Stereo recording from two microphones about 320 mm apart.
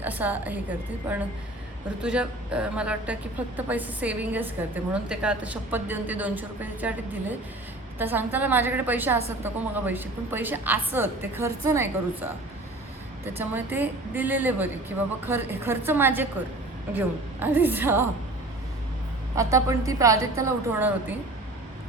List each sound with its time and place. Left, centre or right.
0.0 s a woman's voice: centre
2.0 s a woman's voice: centre
19.4 s a woman's voice: centre